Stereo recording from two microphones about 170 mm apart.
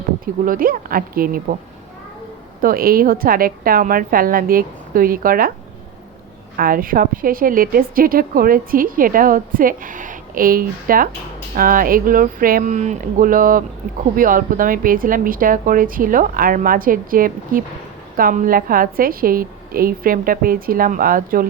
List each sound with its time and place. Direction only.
0.4 s speech: 55° right (ahead or behind)
2.6 s speech: 55° right (ahead or behind)
6.6 s speech: 55° right (ahead or behind)